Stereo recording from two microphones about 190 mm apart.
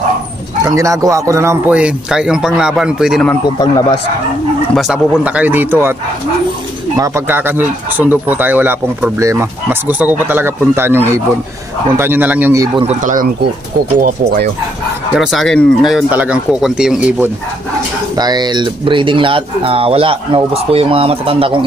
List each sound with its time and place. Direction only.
0.7 s speech: 15° right (ahead or behind)
4.7 s speech: 5° right (ahead or behind)
7.0 s speech: 10° right (ahead or behind)
13.0 s speech: 45° right (ahead or behind)
15.1 s speech: centre (ahead or behind)
18.1 s speech: 20° right (ahead or behind)